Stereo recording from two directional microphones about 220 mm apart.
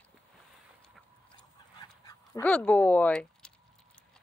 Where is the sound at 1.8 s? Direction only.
15° left (ahead or behind).